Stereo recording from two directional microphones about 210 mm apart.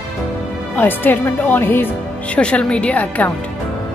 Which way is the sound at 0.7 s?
10° left (ahead or behind).